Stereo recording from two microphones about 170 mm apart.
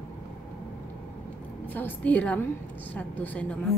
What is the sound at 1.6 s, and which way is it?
A woman's voice, 10° left (ahead or behind).